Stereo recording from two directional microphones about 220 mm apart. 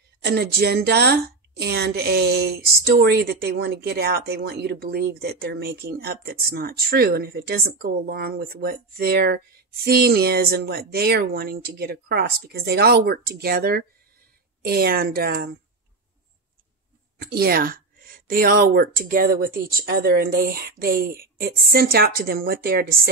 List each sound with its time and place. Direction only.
0.2 s a woman's voice: 50° right (ahead or behind)
17.2 s a woman's voice: 45° right (ahead or behind)